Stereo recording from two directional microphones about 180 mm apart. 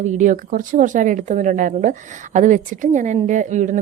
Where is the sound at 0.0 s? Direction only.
45° right (ahead or behind).